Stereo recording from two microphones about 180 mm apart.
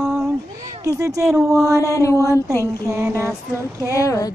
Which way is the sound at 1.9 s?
15° left (ahead or behind).